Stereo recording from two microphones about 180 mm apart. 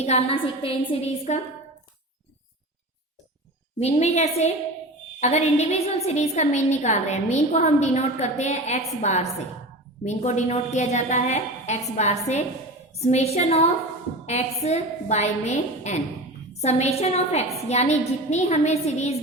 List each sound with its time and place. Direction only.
0.0 s a woman's voice: 35° left (ahead or behind)
3.8 s a woman's voice: 35° left (ahead or behind)